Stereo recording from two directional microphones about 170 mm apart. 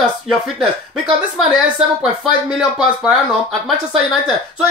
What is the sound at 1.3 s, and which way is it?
Speech, 5° right (ahead or behind).